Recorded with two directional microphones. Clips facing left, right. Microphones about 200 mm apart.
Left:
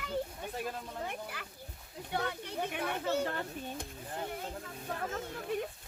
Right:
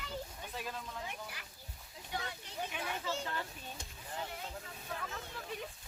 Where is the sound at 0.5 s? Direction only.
50° left (ahead or behind).